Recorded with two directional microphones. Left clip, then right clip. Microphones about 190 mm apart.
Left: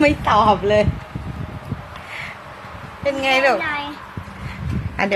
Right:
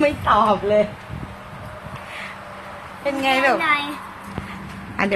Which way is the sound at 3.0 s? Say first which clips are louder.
Left 2 dB; centre (ahead or behind).